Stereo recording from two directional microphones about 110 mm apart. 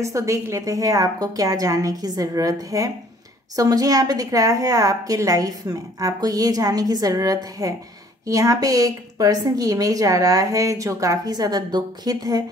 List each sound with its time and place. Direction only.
0.0 s a woman's voice: 30° right (ahead or behind)